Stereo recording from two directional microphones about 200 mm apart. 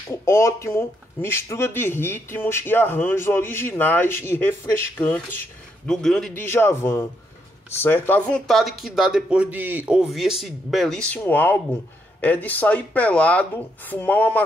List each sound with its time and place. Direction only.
0.1 s speech: 15° left (ahead or behind)